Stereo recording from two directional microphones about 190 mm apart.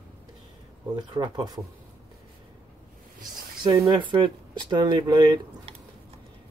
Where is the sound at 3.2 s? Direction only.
20° right (ahead or behind).